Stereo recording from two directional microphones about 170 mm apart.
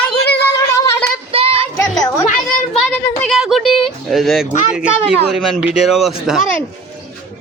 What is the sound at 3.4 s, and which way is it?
Speech, centre (ahead or behind).